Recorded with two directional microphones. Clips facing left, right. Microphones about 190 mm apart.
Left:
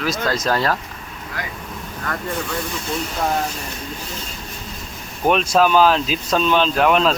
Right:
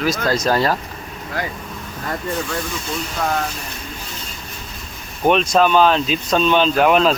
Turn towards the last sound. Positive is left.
turn(degrees=-5)  # may be behind; listen again after turning